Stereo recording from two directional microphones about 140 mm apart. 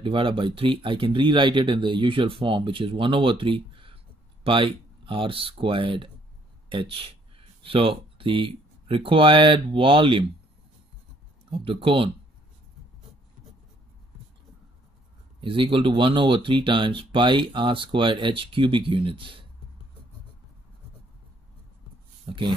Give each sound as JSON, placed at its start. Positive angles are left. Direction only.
{"t": 0.0, "sound": "speech", "side_deg": -40}
{"t": 11.5, "sound": "speech", "side_deg": -40}
{"t": 15.4, "sound": "speech", "side_deg": -40}
{"t": 22.2, "sound": "speech", "side_deg": -35}